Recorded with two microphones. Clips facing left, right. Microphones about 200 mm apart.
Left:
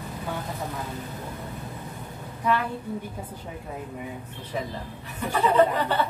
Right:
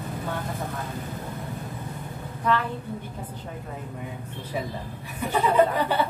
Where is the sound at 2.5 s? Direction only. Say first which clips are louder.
Even; 10° left (ahead or behind).